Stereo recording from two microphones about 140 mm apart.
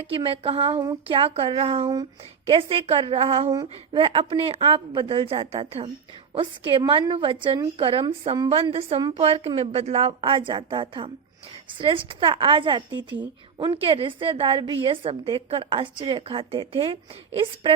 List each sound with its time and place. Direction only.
0.1 s a woman's voice: 40° right (ahead or behind)